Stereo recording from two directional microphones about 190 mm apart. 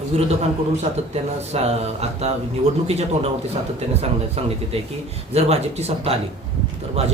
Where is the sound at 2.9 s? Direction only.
35° right (ahead or behind).